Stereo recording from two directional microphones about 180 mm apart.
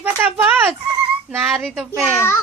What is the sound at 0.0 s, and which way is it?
Fowl, 10° right (ahead or behind).